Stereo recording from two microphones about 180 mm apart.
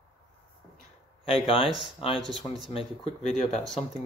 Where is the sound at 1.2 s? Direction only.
30° left (ahead or behind).